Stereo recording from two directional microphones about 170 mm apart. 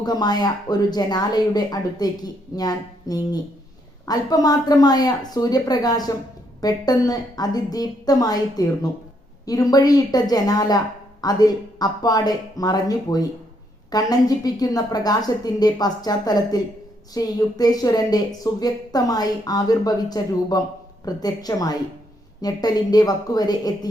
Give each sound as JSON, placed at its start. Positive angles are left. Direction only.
{"t": 0.0, "sound": "a woman's voice", "side_deg": 25}